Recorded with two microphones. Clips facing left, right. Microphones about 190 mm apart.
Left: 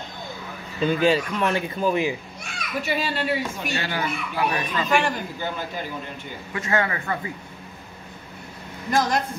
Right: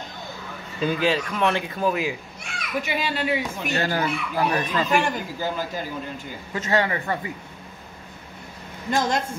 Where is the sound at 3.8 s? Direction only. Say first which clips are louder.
Right 6 dB; 40° right (ahead or behind).